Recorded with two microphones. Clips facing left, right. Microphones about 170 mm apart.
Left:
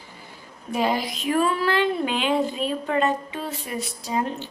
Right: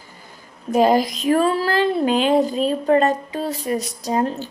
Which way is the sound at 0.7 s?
40° right (ahead or behind).